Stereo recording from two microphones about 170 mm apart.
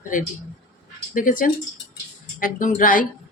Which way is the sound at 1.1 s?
55° left (ahead or behind).